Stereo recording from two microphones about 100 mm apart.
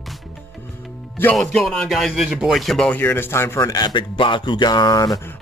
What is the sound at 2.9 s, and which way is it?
Speech, 20° left (ahead or behind).